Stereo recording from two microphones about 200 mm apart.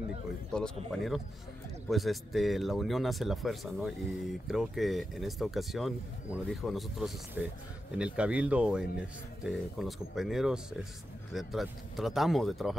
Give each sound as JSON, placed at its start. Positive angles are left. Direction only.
{"t": 0.9, "sound": "speech", "side_deg": 0}